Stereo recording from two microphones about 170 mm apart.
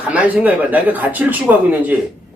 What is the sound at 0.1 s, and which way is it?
Speech, 10° right (ahead or behind).